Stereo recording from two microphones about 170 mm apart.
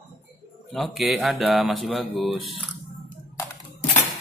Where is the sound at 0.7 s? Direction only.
Centre (ahead or behind).